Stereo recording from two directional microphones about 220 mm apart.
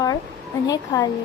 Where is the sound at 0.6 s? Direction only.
15° left (ahead or behind).